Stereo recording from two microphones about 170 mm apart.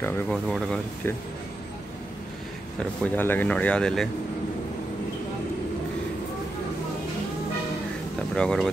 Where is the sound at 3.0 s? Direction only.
10° left (ahead or behind).